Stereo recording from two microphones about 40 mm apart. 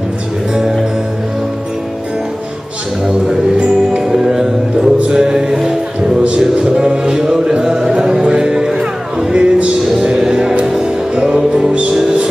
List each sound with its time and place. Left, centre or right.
3.1 s music: right